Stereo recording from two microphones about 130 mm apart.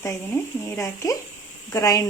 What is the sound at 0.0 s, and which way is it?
Speech, 20° left (ahead or behind).